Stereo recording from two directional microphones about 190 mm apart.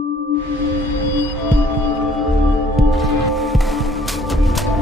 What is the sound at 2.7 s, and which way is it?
Music, centre (ahead or behind).